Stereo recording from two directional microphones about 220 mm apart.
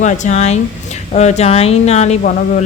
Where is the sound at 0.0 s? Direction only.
30° left (ahead or behind).